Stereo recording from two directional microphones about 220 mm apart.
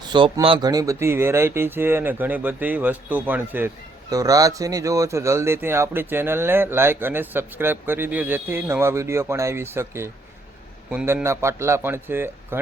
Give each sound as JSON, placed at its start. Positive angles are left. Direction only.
{"t": 0.1, "sound": "speech", "side_deg": -20}